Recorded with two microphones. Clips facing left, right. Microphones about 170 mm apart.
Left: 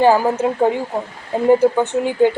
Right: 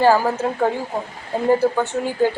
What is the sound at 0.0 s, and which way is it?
A woman's voice, 15° left (ahead or behind).